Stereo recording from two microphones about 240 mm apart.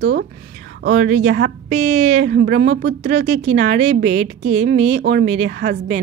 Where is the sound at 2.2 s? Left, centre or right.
Right.